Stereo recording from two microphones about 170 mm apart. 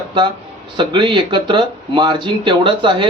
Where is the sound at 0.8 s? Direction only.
30° right (ahead or behind).